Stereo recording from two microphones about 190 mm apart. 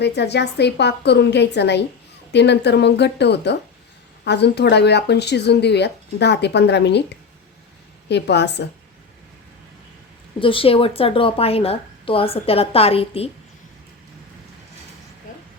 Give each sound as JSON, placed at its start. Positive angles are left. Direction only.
{"t": 0.0, "sound": "speech", "side_deg": 60}
{"t": 8.1, "sound": "speech", "side_deg": 65}
{"t": 10.4, "sound": "speech", "side_deg": 30}